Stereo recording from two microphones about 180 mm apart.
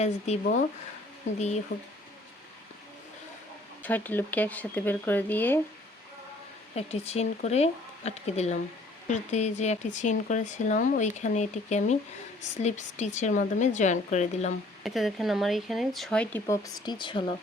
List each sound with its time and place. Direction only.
0.3 s speech: 35° left (ahead or behind)
3.8 s speech: 10° left (ahead or behind)
6.7 s speech: 35° left (ahead or behind)
14.8 s speech: centre (ahead or behind)
16.6 s speech: 20° left (ahead or behind)